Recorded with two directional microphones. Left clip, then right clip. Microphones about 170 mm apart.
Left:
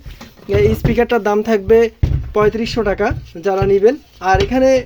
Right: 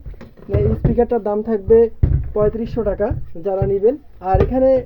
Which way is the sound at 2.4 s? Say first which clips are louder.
Left 4 dB; 20° left (ahead or behind).